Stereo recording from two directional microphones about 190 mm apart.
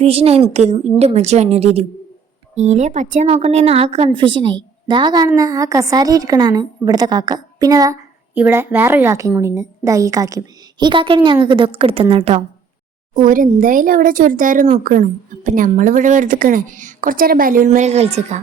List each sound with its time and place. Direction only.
0.0 s a woman's voice: 30° right (ahead or behind)
13.1 s speech: 45° right (ahead or behind)